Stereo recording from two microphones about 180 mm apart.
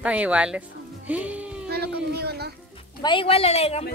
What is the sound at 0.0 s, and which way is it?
Speech, 5° right (ahead or behind).